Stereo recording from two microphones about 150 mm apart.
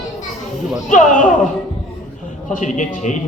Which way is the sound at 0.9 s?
60° left (ahead or behind).